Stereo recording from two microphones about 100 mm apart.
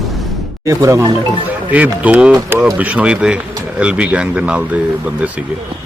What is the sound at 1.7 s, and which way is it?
Speech, 15° right (ahead or behind).